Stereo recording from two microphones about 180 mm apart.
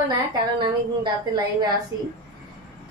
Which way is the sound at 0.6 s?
25° right (ahead or behind).